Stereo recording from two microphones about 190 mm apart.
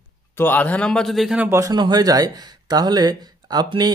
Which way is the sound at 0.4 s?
10° left (ahead or behind).